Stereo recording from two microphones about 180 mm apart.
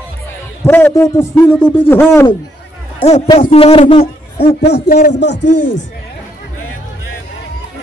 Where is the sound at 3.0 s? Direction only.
35° left (ahead or behind).